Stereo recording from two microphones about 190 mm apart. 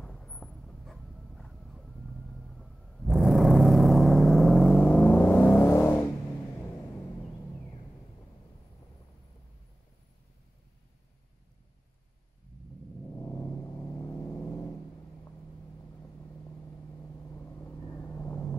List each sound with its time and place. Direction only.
0.0 s vehicle: centre (ahead or behind)
13.0 s gong: 15° left (ahead or behind)
17.2 s vehicle: 10° left (ahead or behind)